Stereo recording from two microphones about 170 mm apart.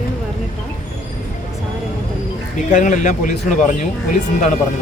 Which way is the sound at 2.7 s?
50° left (ahead or behind).